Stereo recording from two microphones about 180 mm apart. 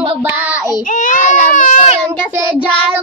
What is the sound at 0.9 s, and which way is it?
A child's voice, 45° left (ahead or behind).